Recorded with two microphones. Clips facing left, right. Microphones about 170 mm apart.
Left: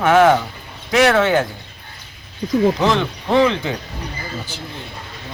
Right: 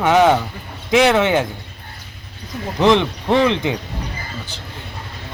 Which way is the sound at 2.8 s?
20° right (ahead or behind).